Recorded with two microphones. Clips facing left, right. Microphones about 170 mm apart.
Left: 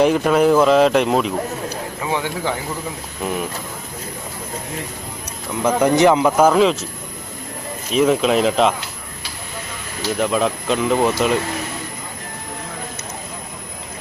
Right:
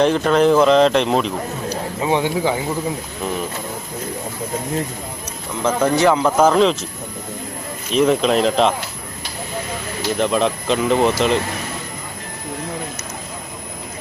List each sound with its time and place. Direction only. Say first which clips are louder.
0.0 s speech: even; 10° left (ahead or behind)
2.0 s speech: right 5 dB; 20° right (ahead or behind)
5.6 s speech: left 2 dB; 15° left (ahead or behind)
7.9 s speech: even; centre (ahead or behind)
10.2 s speech: right 1 dB; 5° left (ahead or behind)